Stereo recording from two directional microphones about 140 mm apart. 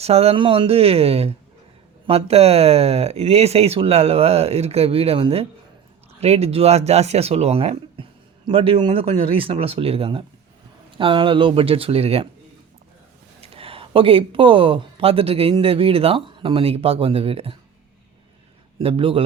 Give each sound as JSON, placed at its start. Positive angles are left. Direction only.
{"t": 0.0, "sound": "speech", "side_deg": -45}
{"t": 13.4, "sound": "speech", "side_deg": -45}
{"t": 18.8, "sound": "speech", "side_deg": -40}